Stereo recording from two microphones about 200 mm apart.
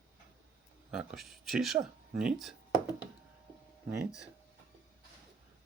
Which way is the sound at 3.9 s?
5° right (ahead or behind).